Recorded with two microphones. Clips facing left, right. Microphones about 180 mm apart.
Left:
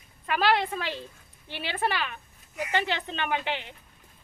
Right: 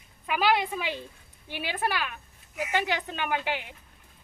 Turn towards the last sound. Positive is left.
turn(degrees=-10)  # may be behind; listen again after turning